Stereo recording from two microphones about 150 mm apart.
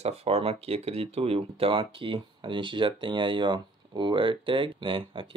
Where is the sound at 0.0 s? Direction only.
40° right (ahead or behind).